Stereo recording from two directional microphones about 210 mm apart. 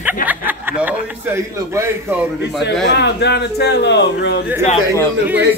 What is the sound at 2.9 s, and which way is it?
A man's voice, 55° left (ahead or behind).